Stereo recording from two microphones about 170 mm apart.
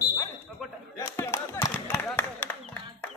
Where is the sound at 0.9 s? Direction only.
15° left (ahead or behind).